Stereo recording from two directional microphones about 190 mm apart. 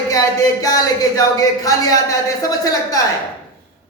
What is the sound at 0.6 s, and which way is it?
Speech, 20° left (ahead or behind).